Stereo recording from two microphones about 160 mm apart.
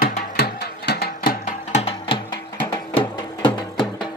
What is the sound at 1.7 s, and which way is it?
Music, 35° left (ahead or behind).